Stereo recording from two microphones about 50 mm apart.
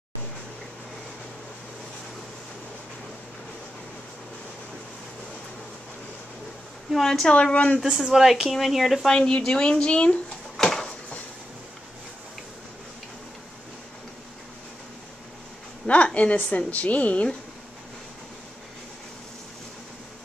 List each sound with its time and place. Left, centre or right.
6.9 s a woman's voice: centre
7.5 s a woman's voice: left
7.8 s a woman's voice: centre
9.0 s a woman's voice: centre
10.6 s a sound: centre
15.9 s a woman's voice: left